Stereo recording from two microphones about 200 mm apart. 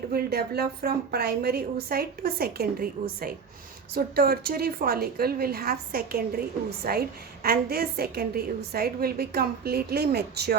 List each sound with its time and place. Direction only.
0.1 s a woman's voice: 50° right (ahead or behind)